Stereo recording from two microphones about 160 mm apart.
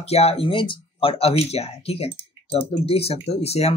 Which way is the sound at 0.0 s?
40° left (ahead or behind).